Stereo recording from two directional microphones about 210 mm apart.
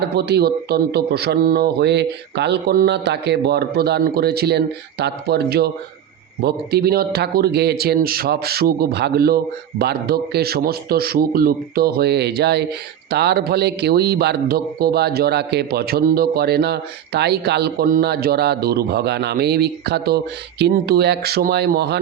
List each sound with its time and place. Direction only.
0.2 s speech: 50° right (ahead or behind)